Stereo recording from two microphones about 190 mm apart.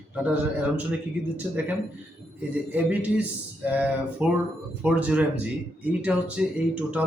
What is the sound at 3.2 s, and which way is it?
A man's voice, 5° right (ahead or behind).